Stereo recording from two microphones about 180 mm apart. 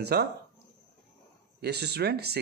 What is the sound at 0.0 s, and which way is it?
Speech, 65° right (ahead or behind).